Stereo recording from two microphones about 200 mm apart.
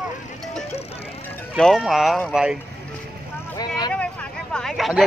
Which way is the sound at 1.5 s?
Centre (ahead or behind).